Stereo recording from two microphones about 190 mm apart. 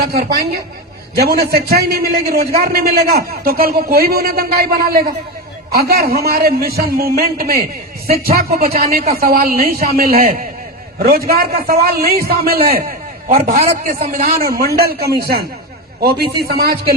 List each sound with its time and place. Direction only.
0.0 s a man's voice: 55° right (ahead or behind)
11.3 s a man's voice: 50° right (ahead or behind)